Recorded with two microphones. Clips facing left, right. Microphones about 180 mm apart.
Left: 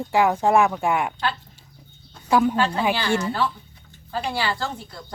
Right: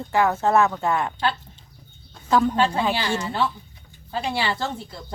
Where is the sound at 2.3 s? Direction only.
10° left (ahead or behind).